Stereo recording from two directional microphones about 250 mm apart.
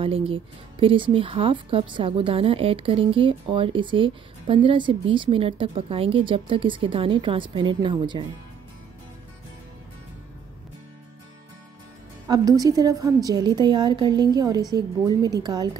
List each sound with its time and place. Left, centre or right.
0.0 s a woman's voice: right
12.3 s a woman's voice: centre